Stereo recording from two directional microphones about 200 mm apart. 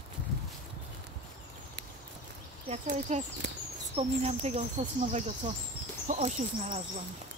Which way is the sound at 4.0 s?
30° right (ahead or behind).